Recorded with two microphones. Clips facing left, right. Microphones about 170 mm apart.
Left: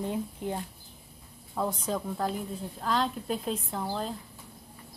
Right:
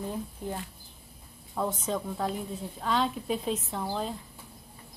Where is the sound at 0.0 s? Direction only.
15° left (ahead or behind).